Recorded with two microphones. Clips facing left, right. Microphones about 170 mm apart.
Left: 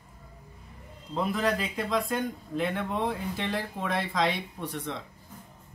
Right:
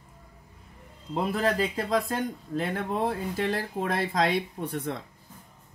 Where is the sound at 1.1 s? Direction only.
40° right (ahead or behind).